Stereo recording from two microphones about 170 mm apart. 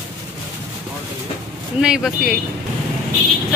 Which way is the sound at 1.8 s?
5° right (ahead or behind).